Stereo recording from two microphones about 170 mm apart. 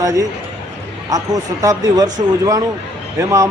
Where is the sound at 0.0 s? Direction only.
20° right (ahead or behind).